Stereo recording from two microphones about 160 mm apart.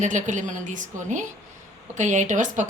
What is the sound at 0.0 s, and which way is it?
A woman's voice, 50° right (ahead or behind).